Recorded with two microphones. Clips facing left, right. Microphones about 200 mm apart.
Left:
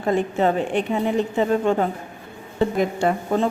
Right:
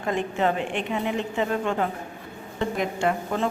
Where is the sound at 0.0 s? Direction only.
35° left (ahead or behind).